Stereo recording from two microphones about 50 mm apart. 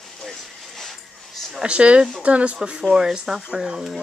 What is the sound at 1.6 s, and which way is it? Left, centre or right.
Speech, right.